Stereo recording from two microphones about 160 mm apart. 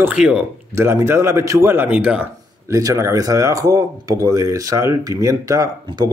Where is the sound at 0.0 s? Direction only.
5° right (ahead or behind).